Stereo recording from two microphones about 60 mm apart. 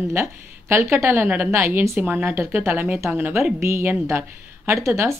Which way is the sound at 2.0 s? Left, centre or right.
Right.